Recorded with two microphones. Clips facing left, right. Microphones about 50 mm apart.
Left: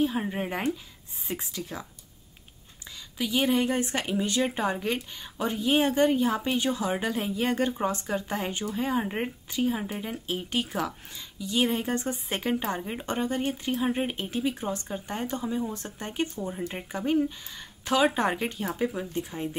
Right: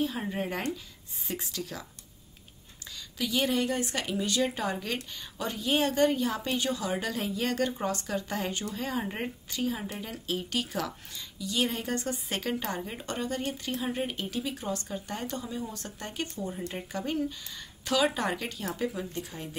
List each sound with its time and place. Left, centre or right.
0.0 s speech: centre
3.2 s a woman's voice: centre